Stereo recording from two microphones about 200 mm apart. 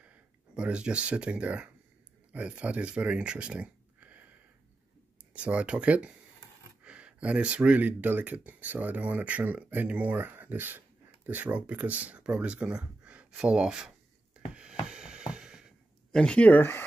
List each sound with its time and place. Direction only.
0.0 s speech: 5° right (ahead or behind)
5.3 s speech: 5° right (ahead or behind)
14.5 s music: 5° right (ahead or behind)
14.9 s a sound: 5° right (ahead or behind)